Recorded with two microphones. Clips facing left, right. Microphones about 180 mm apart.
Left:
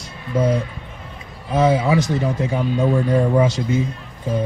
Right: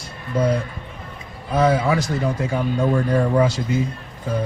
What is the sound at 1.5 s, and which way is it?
A man's voice, 25° left (ahead or behind).